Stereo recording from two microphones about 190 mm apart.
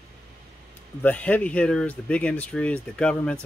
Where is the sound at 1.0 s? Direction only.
10° left (ahead or behind).